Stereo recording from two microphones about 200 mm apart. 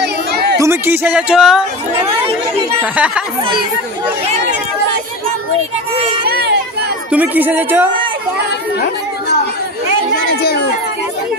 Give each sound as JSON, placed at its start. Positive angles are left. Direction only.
{"t": 0.0, "sound": "a sound", "side_deg": -55}
{"t": 0.6, "sound": "speech", "side_deg": -10}
{"t": 2.8, "sound": "a woman's voice", "side_deg": -5}
{"t": 6.2, "sound": "children playing", "side_deg": -50}
{"t": 7.1, "sound": "a woman's voice", "side_deg": -10}